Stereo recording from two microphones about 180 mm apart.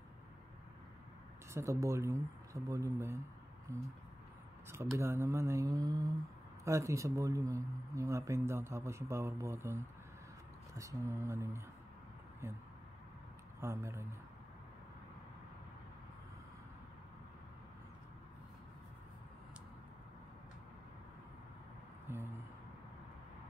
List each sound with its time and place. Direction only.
1.5 s speech: 15° right (ahead or behind)
4.9 s speech: 15° right (ahead or behind)
13.6 s speech: 15° right (ahead or behind)
22.1 s a sound: 15° right (ahead or behind)